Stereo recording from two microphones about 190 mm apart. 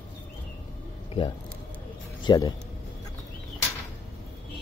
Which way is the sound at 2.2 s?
20° left (ahead or behind).